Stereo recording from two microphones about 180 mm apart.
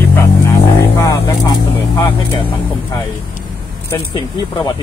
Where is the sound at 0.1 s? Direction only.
15° left (ahead or behind).